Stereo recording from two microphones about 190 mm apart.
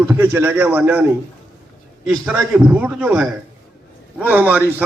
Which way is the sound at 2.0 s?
5° right (ahead or behind).